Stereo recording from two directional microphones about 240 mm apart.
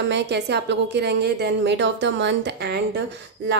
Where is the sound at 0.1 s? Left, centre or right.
Right.